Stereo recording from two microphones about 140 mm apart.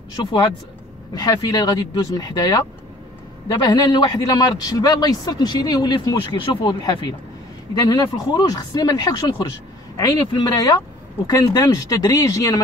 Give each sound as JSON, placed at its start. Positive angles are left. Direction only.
{"t": 0.1, "sound": "a man's voice", "side_deg": 30}